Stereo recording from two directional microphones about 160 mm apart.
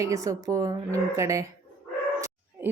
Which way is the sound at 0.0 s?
20° right (ahead or behind).